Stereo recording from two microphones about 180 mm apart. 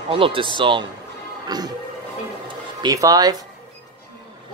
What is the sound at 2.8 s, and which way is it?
Speech, 20° right (ahead or behind).